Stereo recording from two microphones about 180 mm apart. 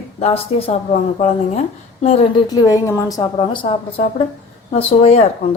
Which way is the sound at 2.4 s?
20° left (ahead or behind).